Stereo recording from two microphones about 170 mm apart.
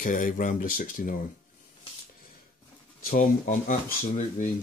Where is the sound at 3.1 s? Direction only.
55° left (ahead or behind).